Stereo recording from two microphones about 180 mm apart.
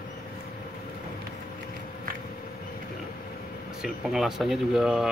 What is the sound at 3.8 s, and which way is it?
Speech, centre (ahead or behind).